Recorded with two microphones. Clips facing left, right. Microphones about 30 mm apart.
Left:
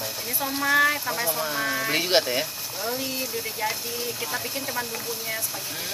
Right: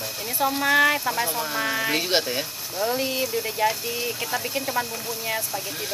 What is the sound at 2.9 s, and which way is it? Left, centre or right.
Speech, right.